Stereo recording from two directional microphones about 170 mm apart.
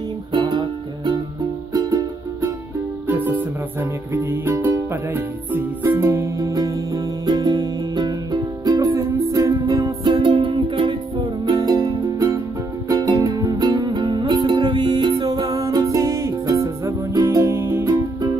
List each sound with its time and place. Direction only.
0.3 s music: 25° right (ahead or behind)
3.1 s music: 10° right (ahead or behind)